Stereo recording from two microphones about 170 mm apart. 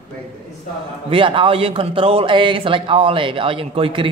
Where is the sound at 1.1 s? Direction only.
30° right (ahead or behind).